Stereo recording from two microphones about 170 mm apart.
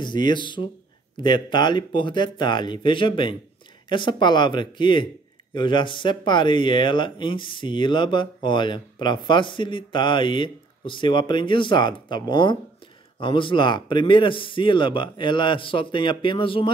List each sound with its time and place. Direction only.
0.0 s speech: 25° left (ahead or behind)